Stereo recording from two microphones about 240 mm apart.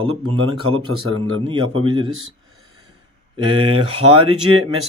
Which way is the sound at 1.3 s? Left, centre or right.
Right.